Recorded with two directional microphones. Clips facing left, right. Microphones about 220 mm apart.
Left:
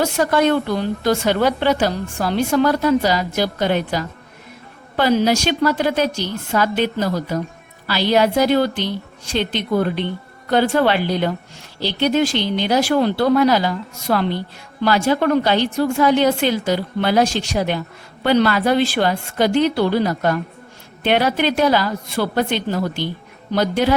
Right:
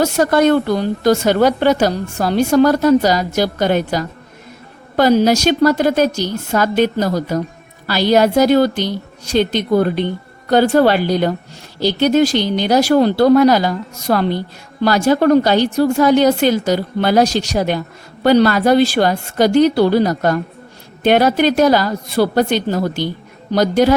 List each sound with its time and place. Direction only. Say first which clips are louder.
0.0 s a woman's voice: right 4 dB; 45° right (ahead or behind)